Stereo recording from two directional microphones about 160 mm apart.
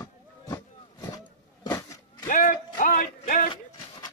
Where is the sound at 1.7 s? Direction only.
20° left (ahead or behind).